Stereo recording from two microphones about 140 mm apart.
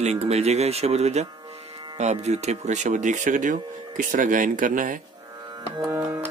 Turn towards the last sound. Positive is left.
turn(degrees=-20)  # may be behind; listen again after turning